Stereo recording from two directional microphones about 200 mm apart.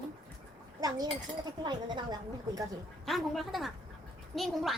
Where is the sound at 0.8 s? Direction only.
20° right (ahead or behind).